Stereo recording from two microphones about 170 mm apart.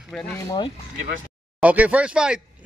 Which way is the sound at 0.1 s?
5° left (ahead or behind).